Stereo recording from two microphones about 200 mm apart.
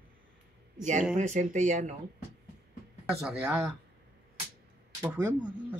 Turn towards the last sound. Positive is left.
turn(degrees=-10)  # may be behind; listen again after turning